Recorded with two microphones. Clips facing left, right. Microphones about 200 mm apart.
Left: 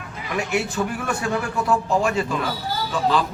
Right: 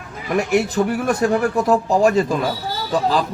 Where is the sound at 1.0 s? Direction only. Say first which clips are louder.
Right 7 dB; 45° right (ahead or behind).